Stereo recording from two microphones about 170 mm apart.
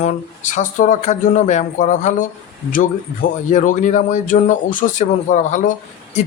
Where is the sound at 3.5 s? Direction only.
50° left (ahead or behind).